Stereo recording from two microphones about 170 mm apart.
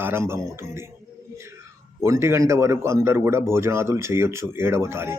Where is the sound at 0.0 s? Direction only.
15° right (ahead or behind).